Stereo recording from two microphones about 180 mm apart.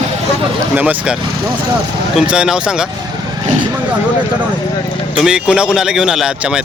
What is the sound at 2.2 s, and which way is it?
Speech, 5° right (ahead or behind).